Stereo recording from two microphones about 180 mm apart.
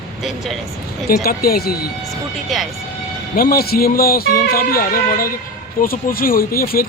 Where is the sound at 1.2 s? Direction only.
60° left (ahead or behind).